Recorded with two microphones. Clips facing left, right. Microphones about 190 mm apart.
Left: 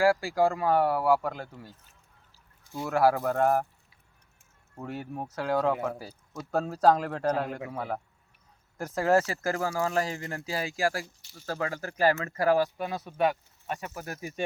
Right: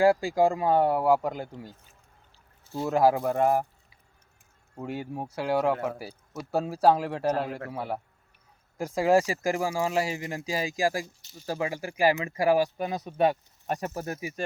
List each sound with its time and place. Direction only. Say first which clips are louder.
0.0 s speech: right 2 dB; 20° right (ahead or behind)
2.7 s speech: right 2 dB; 20° right (ahead or behind)
4.8 s speech: right 2 dB; 10° right (ahead or behind)
13.7 s speech: right 5 dB; 40° right (ahead or behind)